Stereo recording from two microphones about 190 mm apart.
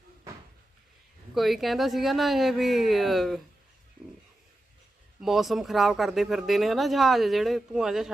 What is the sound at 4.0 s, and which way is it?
Dog, 5° right (ahead or behind).